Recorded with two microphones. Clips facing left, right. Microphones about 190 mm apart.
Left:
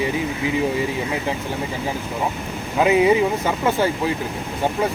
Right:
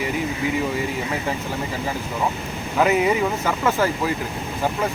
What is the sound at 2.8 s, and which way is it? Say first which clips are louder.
Speech: left 3 dB; 20° left (ahead or behind).